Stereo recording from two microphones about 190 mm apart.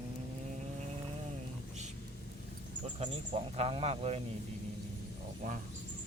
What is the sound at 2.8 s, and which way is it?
Speech, 35° right (ahead or behind).